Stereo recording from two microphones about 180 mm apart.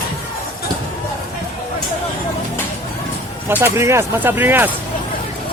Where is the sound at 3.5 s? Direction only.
15° right (ahead or behind).